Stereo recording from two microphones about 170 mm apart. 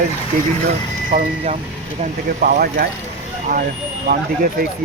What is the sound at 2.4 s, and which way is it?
Speech, 60° right (ahead or behind).